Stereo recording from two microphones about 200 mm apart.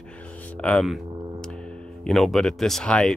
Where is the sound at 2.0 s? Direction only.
Centre (ahead or behind).